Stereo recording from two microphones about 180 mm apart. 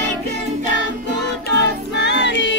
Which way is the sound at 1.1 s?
70° left (ahead or behind).